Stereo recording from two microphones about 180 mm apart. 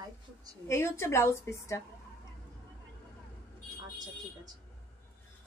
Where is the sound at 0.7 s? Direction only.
15° left (ahead or behind).